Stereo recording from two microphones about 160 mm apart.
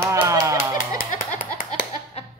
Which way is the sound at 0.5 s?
60° left (ahead or behind).